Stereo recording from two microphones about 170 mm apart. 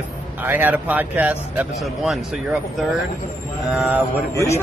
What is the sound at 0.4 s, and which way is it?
Speech, 10° right (ahead or behind).